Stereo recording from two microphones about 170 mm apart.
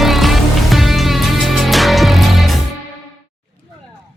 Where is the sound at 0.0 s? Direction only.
Centre (ahead or behind).